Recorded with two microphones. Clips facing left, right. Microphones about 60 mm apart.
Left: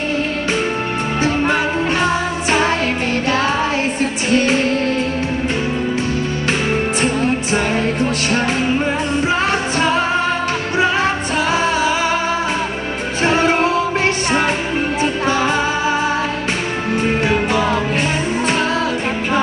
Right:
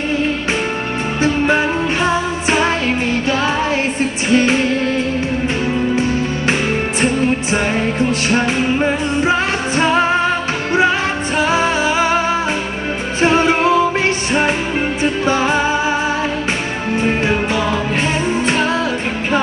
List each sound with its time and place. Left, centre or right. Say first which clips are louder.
1.2 s music: right 3 dB; right
4.3 s music: right 2 dB; right
7.5 s music: even; centre
11.3 s music: right 3 dB; right
13.2 s music: right 1 dB; right
15.2 s music: right 2 dB; right